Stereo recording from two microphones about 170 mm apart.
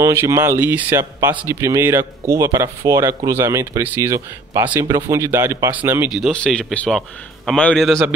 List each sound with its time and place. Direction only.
0.0 s speech: 15° right (ahead or behind)
6.2 s a man's voice: 5° left (ahead or behind)